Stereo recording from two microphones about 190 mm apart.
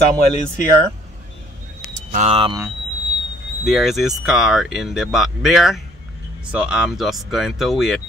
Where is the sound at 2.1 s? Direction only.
35° right (ahead or behind).